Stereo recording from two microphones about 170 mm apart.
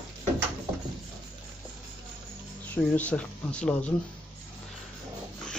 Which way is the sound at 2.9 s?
5° left (ahead or behind).